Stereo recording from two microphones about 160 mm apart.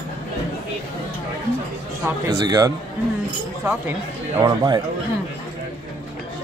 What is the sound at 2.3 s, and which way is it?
Speech, 25° right (ahead or behind).